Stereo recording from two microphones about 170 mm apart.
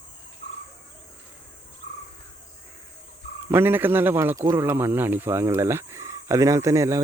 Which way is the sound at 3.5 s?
10° right (ahead or behind).